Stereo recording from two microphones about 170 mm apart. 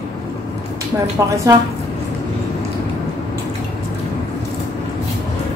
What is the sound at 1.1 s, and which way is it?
Speech, 20° right (ahead or behind).